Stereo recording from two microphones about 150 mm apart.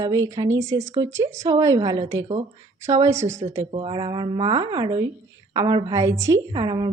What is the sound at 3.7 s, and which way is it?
A woman's voice, 35° right (ahead or behind).